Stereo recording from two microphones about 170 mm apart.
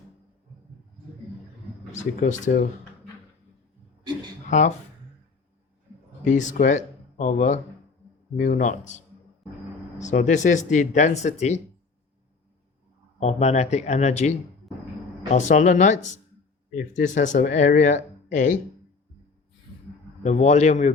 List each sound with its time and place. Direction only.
1.9 s speech: 45° left (ahead or behind)
4.4 s speech: 45° left (ahead or behind)
6.2 s speech: 45° left (ahead or behind)
10.0 s speech: 45° left (ahead or behind)
13.1 s speech: 40° left (ahead or behind)
20.2 s speech: 40° left (ahead or behind)